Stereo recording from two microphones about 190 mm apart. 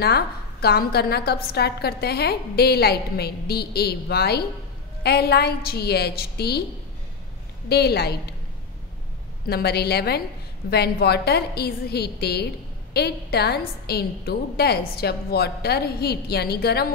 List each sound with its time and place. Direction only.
0.0 s a woman's voice: 55° left (ahead or behind)
7.6 s a woman's voice: 55° left (ahead or behind)
9.5 s a woman's voice: 55° left (ahead or behind)